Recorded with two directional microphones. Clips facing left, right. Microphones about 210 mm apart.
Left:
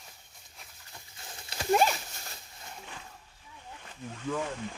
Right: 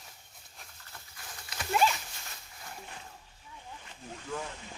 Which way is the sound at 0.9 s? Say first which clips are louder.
Left 2 dB; 25° left (ahead or behind).